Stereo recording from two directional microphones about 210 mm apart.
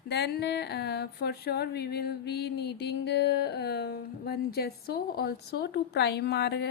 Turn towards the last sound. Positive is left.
turn(degrees=55)  # may be behind; listen again after turning